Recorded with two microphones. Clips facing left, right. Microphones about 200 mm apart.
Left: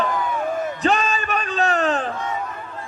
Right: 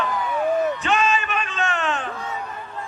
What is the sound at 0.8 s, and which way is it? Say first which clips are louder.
Music: left 1 dB; 35° left (ahead or behind).